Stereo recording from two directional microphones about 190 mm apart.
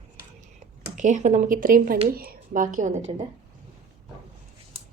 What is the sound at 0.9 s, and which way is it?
A woman's voice, 40° right (ahead or behind).